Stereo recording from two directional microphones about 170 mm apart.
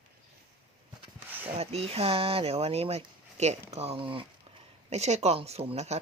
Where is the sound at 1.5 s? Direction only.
35° right (ahead or behind).